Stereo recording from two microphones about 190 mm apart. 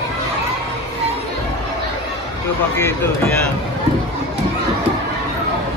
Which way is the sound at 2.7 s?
10° left (ahead or behind).